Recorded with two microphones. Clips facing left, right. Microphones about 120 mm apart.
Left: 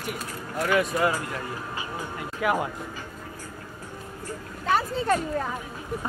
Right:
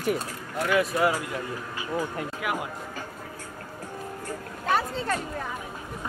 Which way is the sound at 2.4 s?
35° left (ahead or behind).